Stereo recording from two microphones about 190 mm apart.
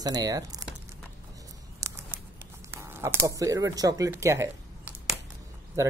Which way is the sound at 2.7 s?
10° right (ahead or behind).